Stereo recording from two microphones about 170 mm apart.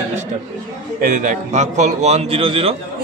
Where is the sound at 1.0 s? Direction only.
50° right (ahead or behind).